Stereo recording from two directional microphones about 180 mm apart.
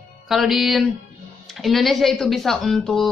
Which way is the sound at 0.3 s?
Centre (ahead or behind).